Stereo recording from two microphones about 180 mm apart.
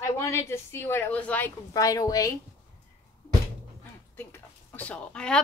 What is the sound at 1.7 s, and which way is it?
Speech, 20° left (ahead or behind).